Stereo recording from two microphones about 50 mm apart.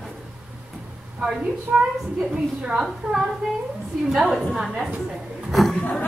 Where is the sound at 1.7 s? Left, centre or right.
Centre.